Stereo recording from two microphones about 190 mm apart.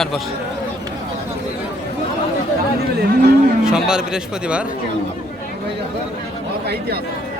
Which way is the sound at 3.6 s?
5° right (ahead or behind).